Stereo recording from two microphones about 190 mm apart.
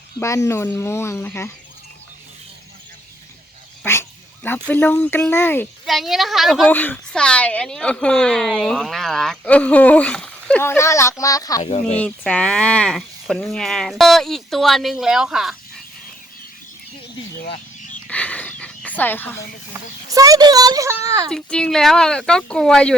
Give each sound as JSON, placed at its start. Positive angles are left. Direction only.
{"t": 0.2, "sound": "speech", "side_deg": 15}
{"t": 3.9, "sound": "speech", "side_deg": 15}
{"t": 5.8, "sound": "a woman's voice", "side_deg": 0}
{"t": 11.6, "sound": "speech", "side_deg": 35}
{"t": 11.9, "sound": "a woman's voice", "side_deg": 5}
{"t": 18.1, "sound": "a sound", "side_deg": 10}
{"t": 20.1, "sound": "a woman's voice", "side_deg": -20}
{"t": 21.2, "sound": "a woman's voice", "side_deg": 5}